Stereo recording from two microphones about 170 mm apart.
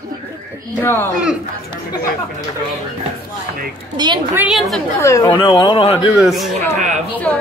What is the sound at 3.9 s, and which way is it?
Speech, 25° right (ahead or behind).